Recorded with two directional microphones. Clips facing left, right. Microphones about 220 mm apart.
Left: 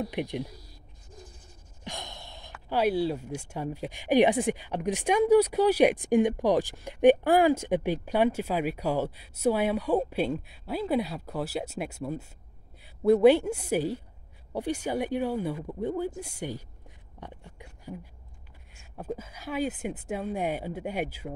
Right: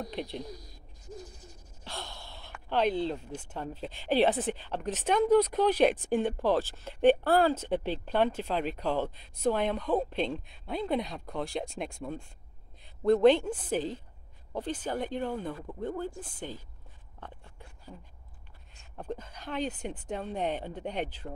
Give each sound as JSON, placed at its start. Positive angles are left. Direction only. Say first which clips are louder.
{"t": 0.0, "sound": "speech", "louder": "left 5 dB", "side_deg": 15}
{"t": 1.9, "sound": "speech", "louder": "left 2 dB", "side_deg": 15}
{"t": 17.2, "sound": "a sound", "louder": "left 3 dB", "side_deg": 15}
{"t": 18.9, "sound": "speech", "louder": "left 2 dB", "side_deg": 5}